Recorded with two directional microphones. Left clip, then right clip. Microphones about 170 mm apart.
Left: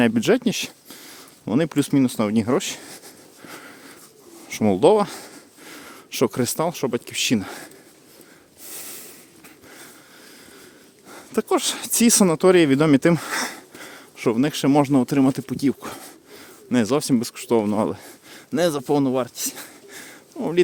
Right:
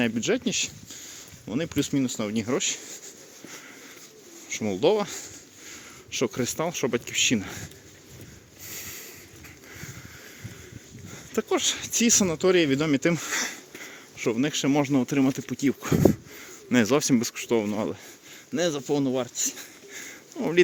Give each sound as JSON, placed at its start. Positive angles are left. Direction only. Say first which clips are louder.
{"t": 0.0, "sound": "speech", "louder": "left 7 dB", "side_deg": 55}
{"t": 3.5, "sound": "a sound", "louder": "left 5 dB", "side_deg": 45}
{"t": 4.4, "sound": "speech", "louder": "left 7 dB", "side_deg": 55}
{"t": 8.6, "sound": "a sound", "louder": "even", "side_deg": 40}
{"t": 11.1, "sound": "speech", "louder": "left 5 dB", "side_deg": 45}
{"t": 15.8, "sound": "speech", "louder": "right 13 dB", "side_deg": 25}
{"t": 18.9, "sound": "speech", "louder": "left 5 dB", "side_deg": 60}
{"t": 19.9, "sound": "sniff", "louder": "even", "side_deg": 35}
{"t": 20.3, "sound": "speech", "louder": "left 2 dB", "side_deg": 20}